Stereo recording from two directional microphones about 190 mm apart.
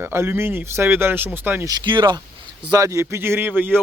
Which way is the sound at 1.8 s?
25° right (ahead or behind).